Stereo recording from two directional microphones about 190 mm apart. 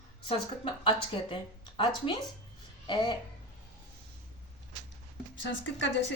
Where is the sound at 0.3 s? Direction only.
25° left (ahead or behind).